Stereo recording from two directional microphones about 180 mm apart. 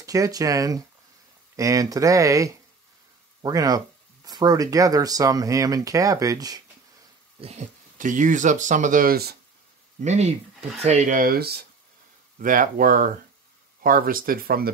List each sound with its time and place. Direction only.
0.0 s speech: 20° right (ahead or behind)
7.3 s a sound: 35° right (ahead or behind)
8.0 s speech: 45° right (ahead or behind)
10.0 s speech: 40° right (ahead or behind); by 11.6 s 60° right (ahead or behind)
12.4 s speech: 50° right (ahead or behind)